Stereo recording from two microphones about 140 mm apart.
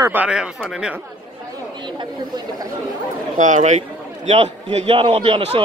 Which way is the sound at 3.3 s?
60° right (ahead or behind).